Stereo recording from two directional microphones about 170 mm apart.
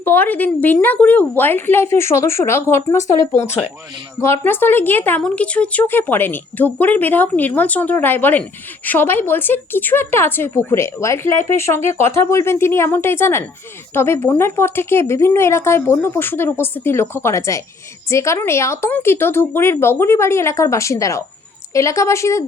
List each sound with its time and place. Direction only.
0.0 s speech: 10° left (ahead or behind)